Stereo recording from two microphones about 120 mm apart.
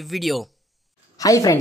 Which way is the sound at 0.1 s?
Centre (ahead or behind).